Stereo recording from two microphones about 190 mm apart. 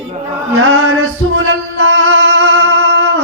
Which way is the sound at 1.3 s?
90° right.